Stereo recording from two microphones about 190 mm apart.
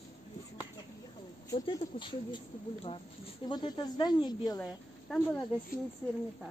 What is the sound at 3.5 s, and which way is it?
Speech, 20° left (ahead or behind).